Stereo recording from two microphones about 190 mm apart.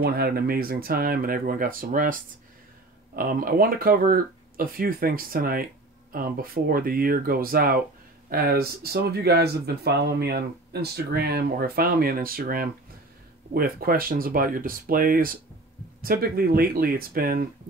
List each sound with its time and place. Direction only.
0.0 s speech: 55° right (ahead or behind)